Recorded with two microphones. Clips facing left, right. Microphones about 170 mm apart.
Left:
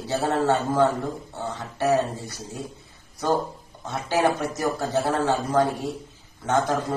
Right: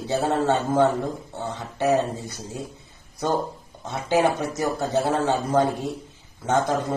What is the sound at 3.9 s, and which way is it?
A man's voice, 20° right (ahead or behind).